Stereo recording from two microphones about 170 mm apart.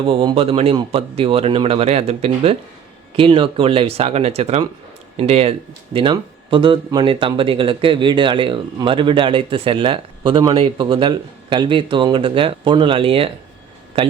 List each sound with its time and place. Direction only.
0.0 s speech: 30° right (ahead or behind)